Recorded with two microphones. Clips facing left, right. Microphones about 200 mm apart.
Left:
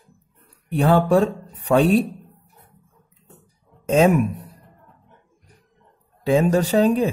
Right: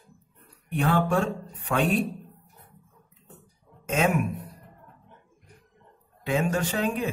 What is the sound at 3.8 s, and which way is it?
Speech, 35° left (ahead or behind).